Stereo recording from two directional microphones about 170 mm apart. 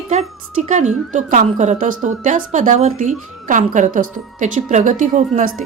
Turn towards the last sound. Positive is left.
turn(degrees=-50)  # may be behind; listen again after turning